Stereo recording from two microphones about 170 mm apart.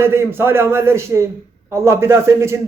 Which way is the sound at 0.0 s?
15° right (ahead or behind).